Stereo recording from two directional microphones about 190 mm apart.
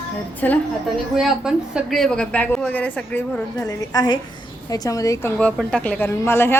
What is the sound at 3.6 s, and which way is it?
A woman's voice, 20° left (ahead or behind).